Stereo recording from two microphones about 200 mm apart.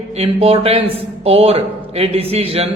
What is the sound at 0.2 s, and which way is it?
A man's voice, 30° right (ahead or behind).